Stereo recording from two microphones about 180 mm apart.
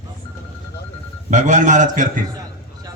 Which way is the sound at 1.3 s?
45° right (ahead or behind).